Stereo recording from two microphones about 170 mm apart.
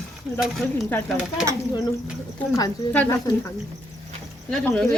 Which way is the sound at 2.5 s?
15° left (ahead or behind).